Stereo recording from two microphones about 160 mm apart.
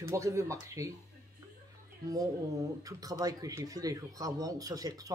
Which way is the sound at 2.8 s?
20° right (ahead or behind).